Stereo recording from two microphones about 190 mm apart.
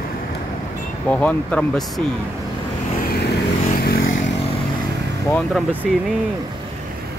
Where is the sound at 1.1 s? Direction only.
5° left (ahead or behind).